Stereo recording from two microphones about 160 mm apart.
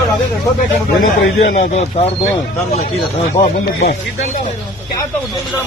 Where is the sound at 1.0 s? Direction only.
55° left (ahead or behind).